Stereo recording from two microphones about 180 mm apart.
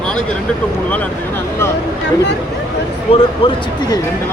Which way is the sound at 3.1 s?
30° left (ahead or behind).